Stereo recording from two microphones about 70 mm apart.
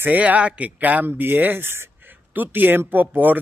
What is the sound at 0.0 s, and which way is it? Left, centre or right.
Speech, right.